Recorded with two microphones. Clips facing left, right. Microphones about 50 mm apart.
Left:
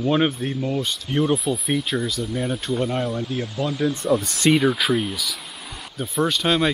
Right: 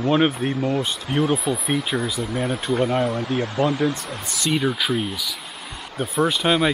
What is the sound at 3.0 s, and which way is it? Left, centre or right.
Speech, right.